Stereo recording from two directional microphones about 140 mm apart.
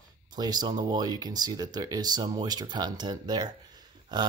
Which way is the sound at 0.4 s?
30° right (ahead or behind).